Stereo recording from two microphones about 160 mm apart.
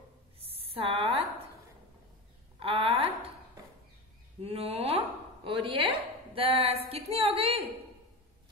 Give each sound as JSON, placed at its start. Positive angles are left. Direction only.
{"t": 0.4, "sound": "a sound", "side_deg": -35}
{"t": 2.6, "sound": "a woman's voice", "side_deg": -35}
{"t": 4.4, "sound": "a woman's voice", "side_deg": -40}